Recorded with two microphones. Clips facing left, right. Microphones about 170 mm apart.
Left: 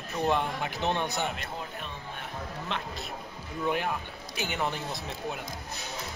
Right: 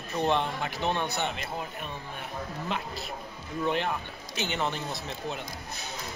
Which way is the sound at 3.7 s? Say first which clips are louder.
Even; 10° left (ahead or behind).